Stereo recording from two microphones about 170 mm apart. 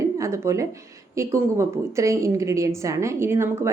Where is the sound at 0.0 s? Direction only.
20° right (ahead or behind).